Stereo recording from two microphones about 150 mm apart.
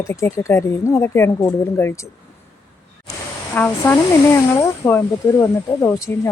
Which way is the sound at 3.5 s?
10° left (ahead or behind).